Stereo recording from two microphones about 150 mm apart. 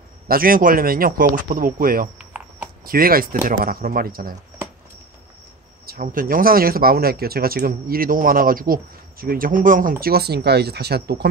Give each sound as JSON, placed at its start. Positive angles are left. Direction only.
{"t": 0.3, "sound": "speech", "side_deg": -70}
{"t": 2.1, "sound": "typing", "side_deg": -5}
{"t": 2.8, "sound": "speech", "side_deg": -75}
{"t": 5.9, "sound": "speech", "side_deg": -70}